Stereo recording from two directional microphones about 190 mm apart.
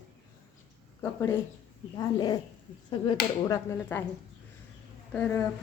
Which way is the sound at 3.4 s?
20° left (ahead or behind).